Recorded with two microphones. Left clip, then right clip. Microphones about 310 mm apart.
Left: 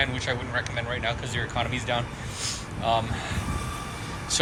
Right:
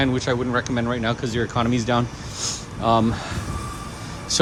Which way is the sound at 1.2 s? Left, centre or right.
Centre.